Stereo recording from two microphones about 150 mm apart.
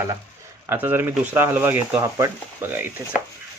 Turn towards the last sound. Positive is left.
turn(degrees=-15)  # may be behind; listen again after turning